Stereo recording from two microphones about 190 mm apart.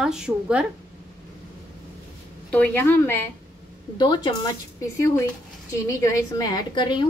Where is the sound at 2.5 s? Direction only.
10° left (ahead or behind).